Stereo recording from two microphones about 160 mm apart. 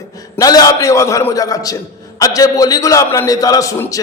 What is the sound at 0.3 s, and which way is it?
A man's voice, 25° left (ahead or behind).